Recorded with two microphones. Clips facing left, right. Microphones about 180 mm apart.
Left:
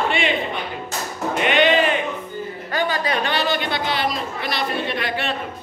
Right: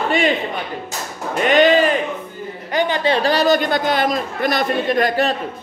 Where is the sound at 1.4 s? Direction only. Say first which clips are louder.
Right 5 dB; 40° right (ahead or behind).